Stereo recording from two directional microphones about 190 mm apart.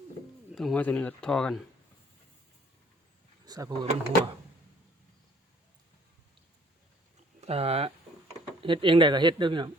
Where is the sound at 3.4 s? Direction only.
20° right (ahead or behind).